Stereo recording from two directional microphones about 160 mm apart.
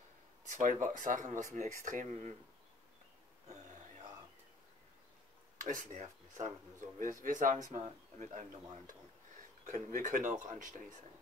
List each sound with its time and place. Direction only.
0.5 s speech: 50° right (ahead or behind)
5.6 s speech: 55° right (ahead or behind)